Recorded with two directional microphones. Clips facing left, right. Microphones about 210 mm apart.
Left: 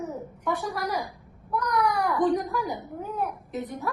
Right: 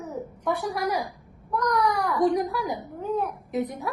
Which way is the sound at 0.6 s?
15° right (ahead or behind).